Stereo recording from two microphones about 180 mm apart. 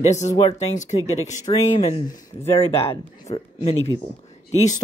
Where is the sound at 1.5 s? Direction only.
25° left (ahead or behind).